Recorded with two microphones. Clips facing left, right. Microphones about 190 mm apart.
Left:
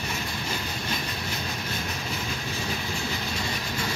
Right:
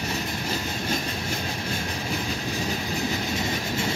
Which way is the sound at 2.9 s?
20° right (ahead or behind).